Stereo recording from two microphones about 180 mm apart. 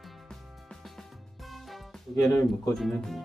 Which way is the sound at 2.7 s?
Centre (ahead or behind).